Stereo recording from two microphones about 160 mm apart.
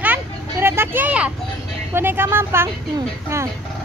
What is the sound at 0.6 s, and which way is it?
Vehicle, 15° right (ahead or behind).